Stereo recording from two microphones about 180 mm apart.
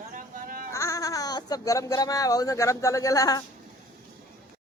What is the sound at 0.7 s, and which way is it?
Speech, 15° left (ahead or behind).